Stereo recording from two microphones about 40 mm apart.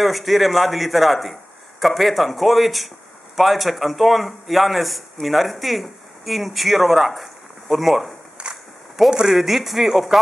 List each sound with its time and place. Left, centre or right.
0.0 s a man's voice: centre
8.4 s a sound: right
9.0 s a man's voice: centre